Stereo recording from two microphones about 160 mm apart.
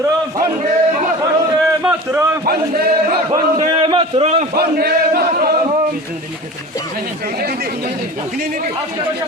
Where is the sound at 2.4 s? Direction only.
70° right (ahead or behind).